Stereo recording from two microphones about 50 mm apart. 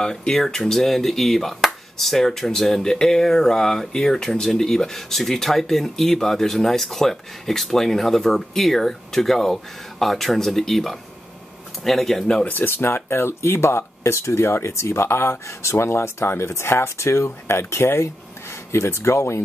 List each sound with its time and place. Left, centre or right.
0.0 s speech: centre
12.4 s speech: left